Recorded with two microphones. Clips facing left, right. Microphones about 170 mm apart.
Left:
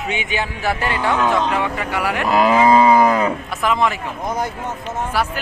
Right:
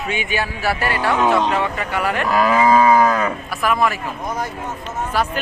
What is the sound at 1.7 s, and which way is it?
Livestock, 10° left (ahead or behind).